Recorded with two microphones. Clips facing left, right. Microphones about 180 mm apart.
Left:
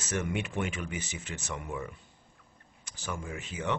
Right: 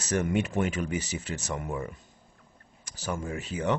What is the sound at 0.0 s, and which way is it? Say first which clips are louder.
Speech: right 6 dB; 40° right (ahead or behind).